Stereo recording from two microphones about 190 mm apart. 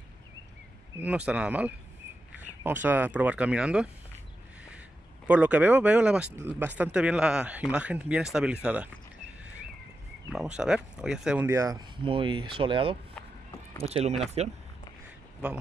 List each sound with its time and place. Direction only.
0.9 s speech: 5° right (ahead or behind)
10.3 s speech: 5° right (ahead or behind)
11.4 s speech: 15° right (ahead or behind); by 14.2 s 35° right (ahead or behind)